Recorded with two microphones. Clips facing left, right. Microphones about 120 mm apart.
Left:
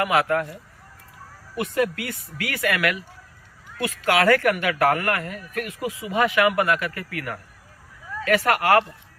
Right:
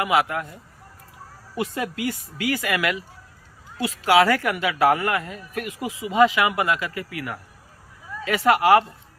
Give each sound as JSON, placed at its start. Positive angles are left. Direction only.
{"t": 0.0, "sound": "a man's voice", "side_deg": -20}
{"t": 1.5, "sound": "a man's voice", "side_deg": -25}
{"t": 4.0, "sound": "a man's voice", "side_deg": -20}